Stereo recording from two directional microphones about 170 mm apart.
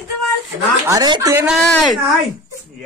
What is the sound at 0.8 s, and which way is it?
Speech, 25° right (ahead or behind).